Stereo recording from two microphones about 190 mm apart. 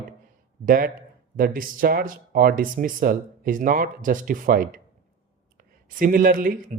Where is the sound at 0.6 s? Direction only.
45° right (ahead or behind).